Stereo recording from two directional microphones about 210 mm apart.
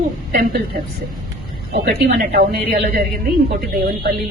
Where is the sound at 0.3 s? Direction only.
50° right (ahead or behind).